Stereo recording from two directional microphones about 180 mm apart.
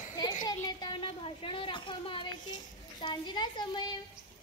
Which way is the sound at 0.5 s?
20° left (ahead or behind).